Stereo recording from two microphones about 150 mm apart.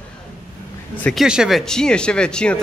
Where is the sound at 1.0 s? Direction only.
5° right (ahead or behind).